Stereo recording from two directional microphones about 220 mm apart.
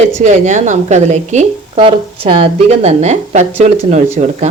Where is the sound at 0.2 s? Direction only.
35° right (ahead or behind).